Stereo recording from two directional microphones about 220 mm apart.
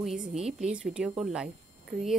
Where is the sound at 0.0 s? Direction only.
Centre (ahead or behind).